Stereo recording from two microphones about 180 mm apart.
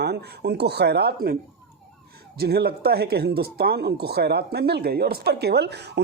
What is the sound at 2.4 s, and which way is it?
Speech, 60° right (ahead or behind).